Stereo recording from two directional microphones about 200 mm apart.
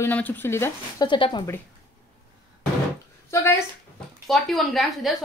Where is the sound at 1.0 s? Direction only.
25° left (ahead or behind).